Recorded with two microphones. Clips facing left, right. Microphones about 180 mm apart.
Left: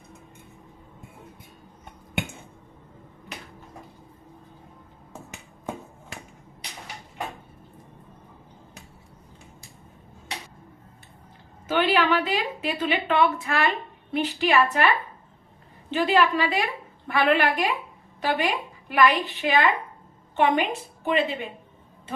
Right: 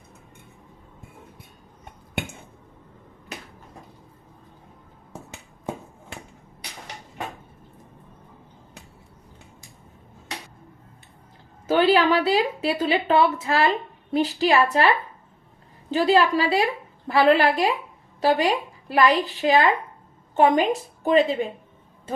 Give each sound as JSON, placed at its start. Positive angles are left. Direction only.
{"t": 11.7, "sound": "a woman's voice", "side_deg": -35}
{"t": 15.9, "sound": "a woman's voice", "side_deg": -35}